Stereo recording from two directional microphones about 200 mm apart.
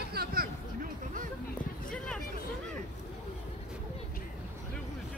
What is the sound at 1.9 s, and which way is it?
Hubbub, 5° left (ahead or behind).